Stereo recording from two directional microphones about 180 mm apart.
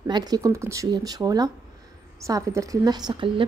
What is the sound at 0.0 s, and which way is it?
Speech, 20° right (ahead or behind).